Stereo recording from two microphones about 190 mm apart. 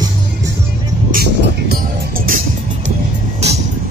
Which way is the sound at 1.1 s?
50° right (ahead or behind).